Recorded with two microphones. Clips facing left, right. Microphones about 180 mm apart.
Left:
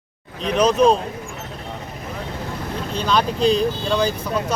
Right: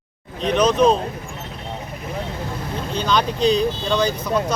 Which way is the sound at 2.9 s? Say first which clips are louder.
Even; centre (ahead or behind).